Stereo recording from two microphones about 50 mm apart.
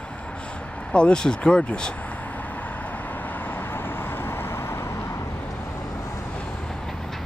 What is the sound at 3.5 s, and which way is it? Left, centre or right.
Vehicle, left.